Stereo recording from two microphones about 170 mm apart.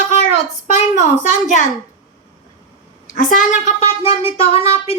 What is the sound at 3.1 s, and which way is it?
A child's voice, 50° left (ahead or behind).